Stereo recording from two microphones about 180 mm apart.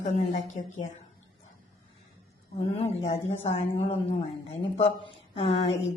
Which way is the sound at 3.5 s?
30° left (ahead or behind).